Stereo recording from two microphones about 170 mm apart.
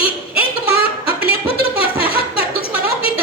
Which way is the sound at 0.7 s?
35° left (ahead or behind).